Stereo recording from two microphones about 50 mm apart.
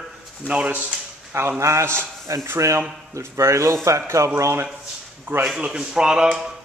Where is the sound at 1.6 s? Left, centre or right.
Right.